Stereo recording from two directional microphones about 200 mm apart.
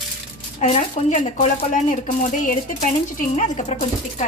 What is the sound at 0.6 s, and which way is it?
Speech, 35° left (ahead or behind).